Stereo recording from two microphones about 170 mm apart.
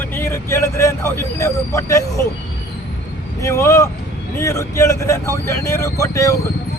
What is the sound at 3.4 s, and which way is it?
A man's voice, 15° left (ahead or behind).